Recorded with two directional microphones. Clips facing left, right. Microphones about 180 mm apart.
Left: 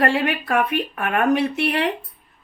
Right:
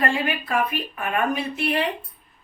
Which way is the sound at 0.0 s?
70° left (ahead or behind).